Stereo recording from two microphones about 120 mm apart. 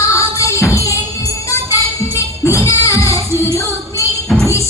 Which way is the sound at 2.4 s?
25° left (ahead or behind).